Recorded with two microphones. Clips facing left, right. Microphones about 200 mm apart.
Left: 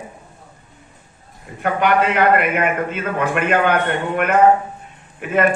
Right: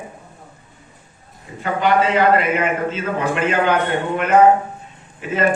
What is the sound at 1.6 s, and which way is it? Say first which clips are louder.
A man's voice: even; 60° left (ahead or behind).